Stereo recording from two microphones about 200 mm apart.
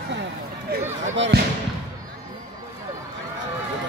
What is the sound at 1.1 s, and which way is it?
Speech, 65° right (ahead or behind).